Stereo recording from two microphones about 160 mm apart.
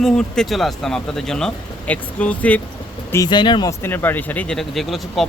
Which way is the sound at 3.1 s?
25° left (ahead or behind).